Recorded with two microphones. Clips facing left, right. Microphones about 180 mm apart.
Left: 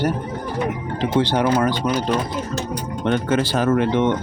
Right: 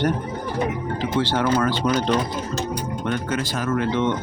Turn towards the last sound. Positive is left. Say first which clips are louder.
# left 4 dB
turn(degrees=15)  # may be behind; listen again after turning